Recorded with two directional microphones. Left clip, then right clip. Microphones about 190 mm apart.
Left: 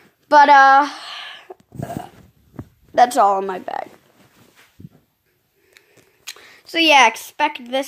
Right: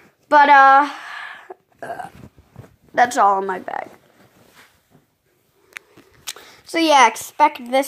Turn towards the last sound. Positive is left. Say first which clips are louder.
# right 4 dB
turn(degrees=-10)  # may be behind; listen again after turning